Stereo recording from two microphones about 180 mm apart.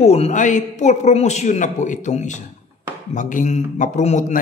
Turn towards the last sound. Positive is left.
turn(degrees=40)  # may be behind; listen again after turning